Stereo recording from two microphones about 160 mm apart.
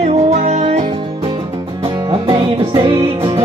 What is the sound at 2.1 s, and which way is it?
Music, 30° right (ahead or behind).